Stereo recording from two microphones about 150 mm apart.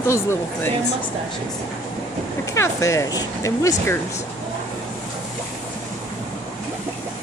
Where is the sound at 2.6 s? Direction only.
20° left (ahead or behind).